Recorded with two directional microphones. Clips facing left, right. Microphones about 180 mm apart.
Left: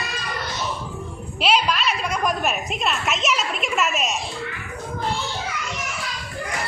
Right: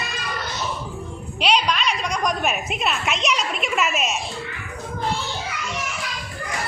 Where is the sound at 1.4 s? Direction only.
5° left (ahead or behind).